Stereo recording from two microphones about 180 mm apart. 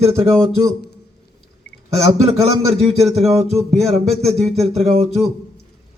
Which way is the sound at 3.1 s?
35° right (ahead or behind).